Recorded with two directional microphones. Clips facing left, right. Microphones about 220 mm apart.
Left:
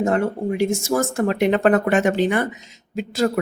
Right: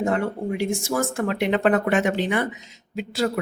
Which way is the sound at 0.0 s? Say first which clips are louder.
Left 3 dB; 40° left (ahead or behind).